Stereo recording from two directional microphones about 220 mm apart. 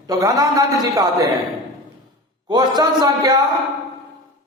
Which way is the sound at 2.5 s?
20° right (ahead or behind).